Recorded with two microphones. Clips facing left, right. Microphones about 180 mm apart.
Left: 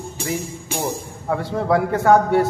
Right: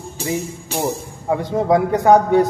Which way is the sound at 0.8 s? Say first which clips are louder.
Right 4 dB; 20° right (ahead or behind).